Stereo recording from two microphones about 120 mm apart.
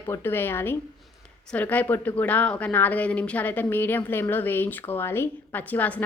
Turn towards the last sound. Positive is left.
turn(degrees=15)  # may be behind; listen again after turning